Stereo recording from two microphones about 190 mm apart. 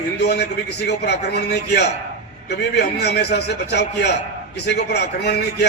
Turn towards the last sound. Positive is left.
turn(degrees=60)  # may be behind; listen again after turning